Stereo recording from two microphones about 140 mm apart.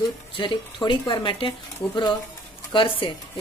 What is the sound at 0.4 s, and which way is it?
Speech, 35° left (ahead or behind).